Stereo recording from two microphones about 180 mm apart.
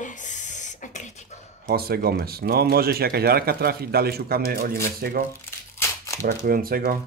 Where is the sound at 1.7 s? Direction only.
60° right (ahead or behind).